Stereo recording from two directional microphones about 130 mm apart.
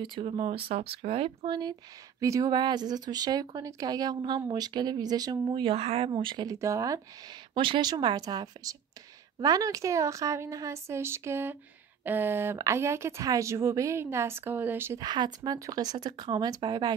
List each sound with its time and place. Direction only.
0.0 s speech: 40° right (ahead or behind); by 7.0 s 25° right (ahead or behind)
7.5 s speech: 40° right (ahead or behind); by 15.0 s 15° right (ahead or behind)
15.0 s speech: 35° right (ahead or behind)